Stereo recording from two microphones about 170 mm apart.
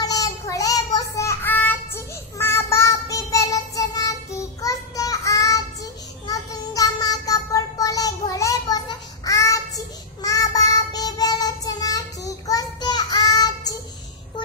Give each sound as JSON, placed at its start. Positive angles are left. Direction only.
{"t": 0.0, "sound": "child singing", "side_deg": 20}